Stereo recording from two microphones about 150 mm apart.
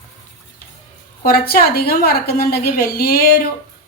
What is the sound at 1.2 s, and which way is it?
A woman's voice, 75° left (ahead or behind).